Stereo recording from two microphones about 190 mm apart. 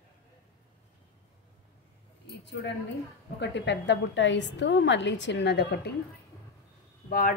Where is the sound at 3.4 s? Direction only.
65° left (ahead or behind).